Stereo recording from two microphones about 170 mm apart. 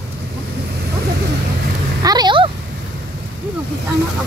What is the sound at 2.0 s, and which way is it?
Speech, 25° right (ahead or behind).